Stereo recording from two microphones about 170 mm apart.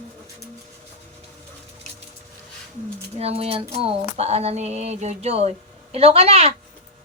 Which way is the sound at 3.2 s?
35° right (ahead or behind).